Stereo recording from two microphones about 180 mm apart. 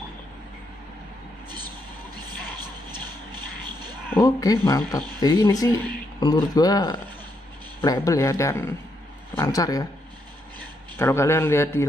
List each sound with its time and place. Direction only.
2.9 s a sound: 25° right (ahead or behind)
4.1 s speech: 20° left (ahead or behind)
11.0 s speech: 15° left (ahead or behind)